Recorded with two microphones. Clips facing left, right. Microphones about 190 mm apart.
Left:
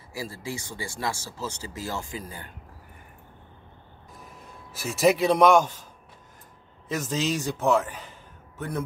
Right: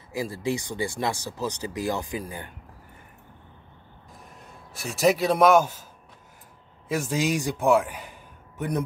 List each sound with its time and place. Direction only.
0.1 s speech: 20° right (ahead or behind)
4.2 s a man's voice: centre (ahead or behind)
6.9 s a man's voice: 10° right (ahead or behind)